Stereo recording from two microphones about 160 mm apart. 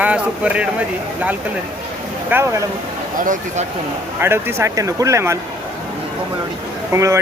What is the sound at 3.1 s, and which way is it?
Speech, 55° right (ahead or behind).